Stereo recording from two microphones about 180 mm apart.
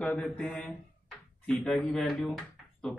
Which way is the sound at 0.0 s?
5° left (ahead or behind).